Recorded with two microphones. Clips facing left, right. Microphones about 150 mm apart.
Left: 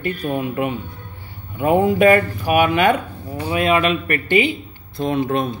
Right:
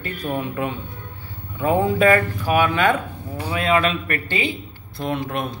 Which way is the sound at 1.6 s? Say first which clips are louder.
Left 3 dB; 15° left (ahead or behind).